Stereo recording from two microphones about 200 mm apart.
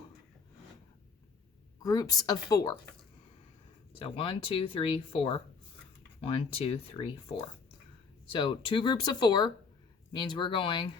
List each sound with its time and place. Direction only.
1.8 s speech: 20° left (ahead or behind)
3.9 s speech: 25° left (ahead or behind)